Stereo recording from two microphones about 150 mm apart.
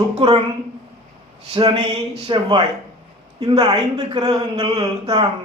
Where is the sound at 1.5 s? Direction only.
35° right (ahead or behind).